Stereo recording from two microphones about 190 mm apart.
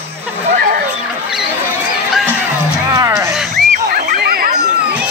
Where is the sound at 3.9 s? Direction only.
50° right (ahead or behind).